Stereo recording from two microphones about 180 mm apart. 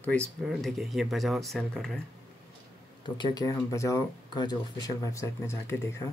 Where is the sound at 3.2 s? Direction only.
25° left (ahead or behind).